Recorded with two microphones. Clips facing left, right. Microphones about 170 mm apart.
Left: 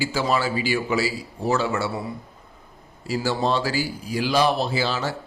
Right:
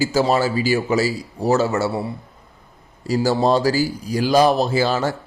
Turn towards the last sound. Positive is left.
turn(degrees=-45)  # may be behind; listen again after turning